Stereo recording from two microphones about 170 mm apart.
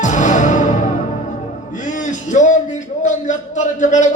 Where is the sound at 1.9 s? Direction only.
45° left (ahead or behind).